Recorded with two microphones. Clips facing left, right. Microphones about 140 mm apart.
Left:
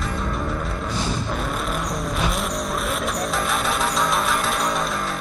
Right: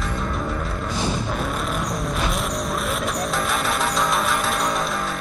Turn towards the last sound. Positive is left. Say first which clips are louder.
# even
turn(degrees=0)  # may be behind; listen again after turning